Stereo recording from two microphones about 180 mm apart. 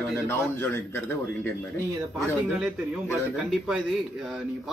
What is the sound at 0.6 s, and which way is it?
Speech, 15° left (ahead or behind).